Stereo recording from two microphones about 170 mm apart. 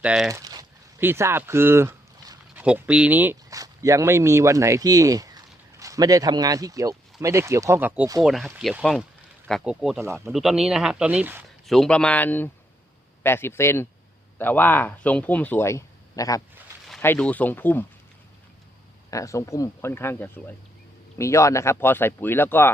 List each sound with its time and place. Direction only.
0.0 s speech: 5° right (ahead or behind)
0.3 s speech: 20° right (ahead or behind)
8.2 s speech: centre (ahead or behind)
11.6 s speech: centre (ahead or behind); by 16.4 s 20° left (ahead or behind)
17.0 s speech: 10° left (ahead or behind)
19.1 s speech: 20° left (ahead or behind)